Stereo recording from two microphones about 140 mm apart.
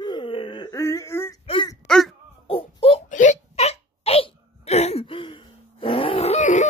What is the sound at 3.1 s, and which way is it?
Hiccup, 60° left (ahead or behind).